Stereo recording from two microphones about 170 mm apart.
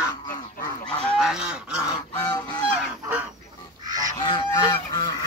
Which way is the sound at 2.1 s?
25° left (ahead or behind).